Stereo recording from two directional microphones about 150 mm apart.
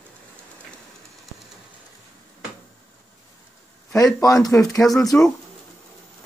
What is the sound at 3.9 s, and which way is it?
Speech, 25° left (ahead or behind).